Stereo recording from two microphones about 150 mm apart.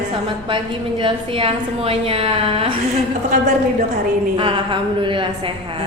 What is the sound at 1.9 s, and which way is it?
Speech, 40° right (ahead or behind).